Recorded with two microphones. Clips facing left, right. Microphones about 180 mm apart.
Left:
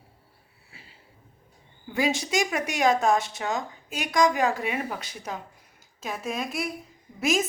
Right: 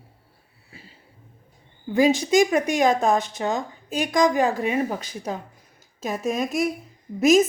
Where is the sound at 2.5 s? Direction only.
35° right (ahead or behind).